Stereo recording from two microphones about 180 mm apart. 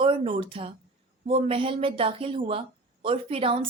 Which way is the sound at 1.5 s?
30° right (ahead or behind).